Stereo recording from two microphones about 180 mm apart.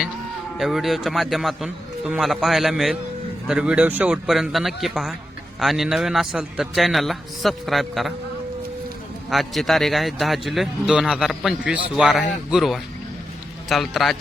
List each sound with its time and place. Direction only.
0.6 s a man's voice: centre (ahead or behind)
9.3 s a man's voice: centre (ahead or behind)